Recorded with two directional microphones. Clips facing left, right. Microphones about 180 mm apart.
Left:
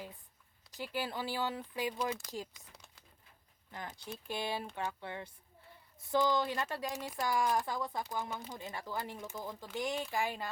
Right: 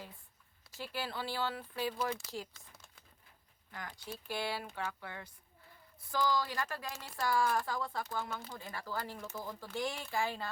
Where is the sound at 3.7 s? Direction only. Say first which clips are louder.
Left 1 dB; 20° left (ahead or behind).